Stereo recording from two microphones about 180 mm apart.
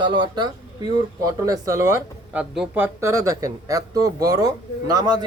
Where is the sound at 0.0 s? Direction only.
25° right (ahead or behind).